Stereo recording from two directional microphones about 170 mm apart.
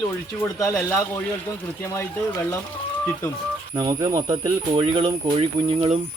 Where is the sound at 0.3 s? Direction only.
20° left (ahead or behind).